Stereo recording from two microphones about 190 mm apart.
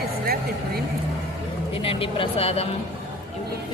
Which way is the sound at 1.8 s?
30° left (ahead or behind).